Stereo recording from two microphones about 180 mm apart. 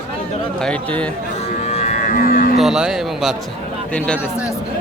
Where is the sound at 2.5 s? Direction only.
Centre (ahead or behind).